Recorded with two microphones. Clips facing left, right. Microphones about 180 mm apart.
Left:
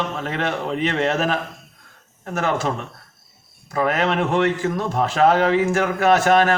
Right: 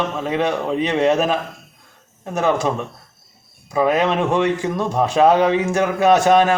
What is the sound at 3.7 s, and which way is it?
Speech, 15° right (ahead or behind).